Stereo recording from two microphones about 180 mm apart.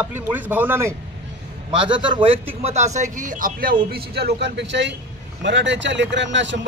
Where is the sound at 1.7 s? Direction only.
30° right (ahead or behind).